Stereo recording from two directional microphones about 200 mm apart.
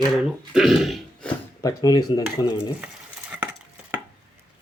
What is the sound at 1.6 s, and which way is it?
Speech, 20° left (ahead or behind).